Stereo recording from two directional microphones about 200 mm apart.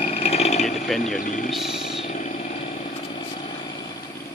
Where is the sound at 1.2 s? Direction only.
40° left (ahead or behind).